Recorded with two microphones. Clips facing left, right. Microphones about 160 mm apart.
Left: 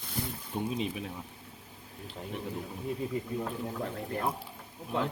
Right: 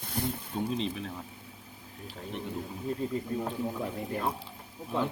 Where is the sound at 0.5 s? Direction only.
10° left (ahead or behind).